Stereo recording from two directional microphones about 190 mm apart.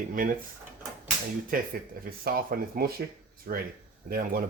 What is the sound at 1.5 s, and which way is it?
Speech, 45° right (ahead or behind).